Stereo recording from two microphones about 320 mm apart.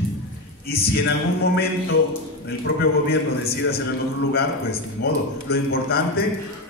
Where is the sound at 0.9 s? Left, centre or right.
Left.